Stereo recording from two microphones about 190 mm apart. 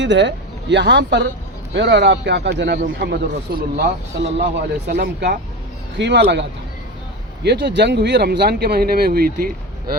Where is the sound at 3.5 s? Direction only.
50° right (ahead or behind).